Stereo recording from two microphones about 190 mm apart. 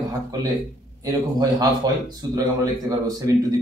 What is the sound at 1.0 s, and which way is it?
A man's voice, 20° right (ahead or behind).